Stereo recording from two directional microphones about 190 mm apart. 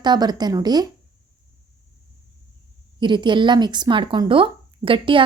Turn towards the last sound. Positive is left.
turn(degrees=-25)  # may be behind; listen again after turning